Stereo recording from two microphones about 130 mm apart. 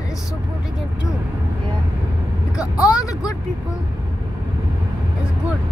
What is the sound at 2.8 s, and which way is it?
Speech, 30° left (ahead or behind).